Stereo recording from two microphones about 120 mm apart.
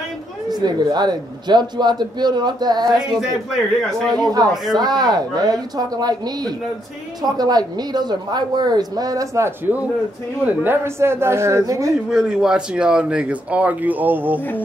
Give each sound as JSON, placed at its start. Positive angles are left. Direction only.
{"t": 0.5, "sound": "a man's voice", "side_deg": -35}
{"t": 3.0, "sound": "a man's voice", "side_deg": -5}
{"t": 4.2, "sound": "a man's voice", "side_deg": -35}
{"t": 12.1, "sound": "speech", "side_deg": -5}